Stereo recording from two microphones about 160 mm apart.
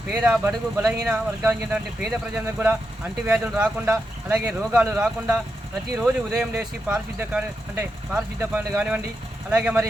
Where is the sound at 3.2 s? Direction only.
10° right (ahead or behind).